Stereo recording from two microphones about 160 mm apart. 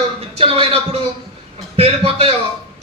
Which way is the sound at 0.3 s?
35° right (ahead or behind).